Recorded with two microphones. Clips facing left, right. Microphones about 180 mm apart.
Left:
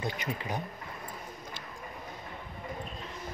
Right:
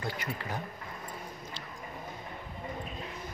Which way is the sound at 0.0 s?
20° left (ahead or behind).